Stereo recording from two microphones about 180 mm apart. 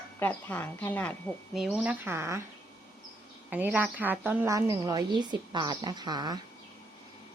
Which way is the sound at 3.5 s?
10° right (ahead or behind).